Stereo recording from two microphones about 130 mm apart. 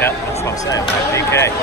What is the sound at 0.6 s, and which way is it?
Speech, 25° left (ahead or behind).